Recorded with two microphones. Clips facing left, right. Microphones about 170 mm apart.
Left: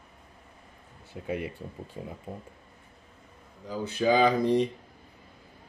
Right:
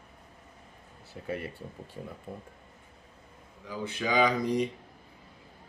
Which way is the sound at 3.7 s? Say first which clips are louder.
Left 6 dB; 35° left (ahead or behind).